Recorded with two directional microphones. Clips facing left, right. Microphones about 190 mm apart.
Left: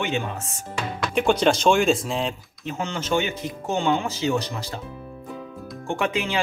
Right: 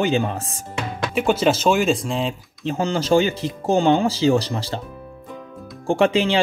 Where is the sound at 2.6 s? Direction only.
35° right (ahead or behind).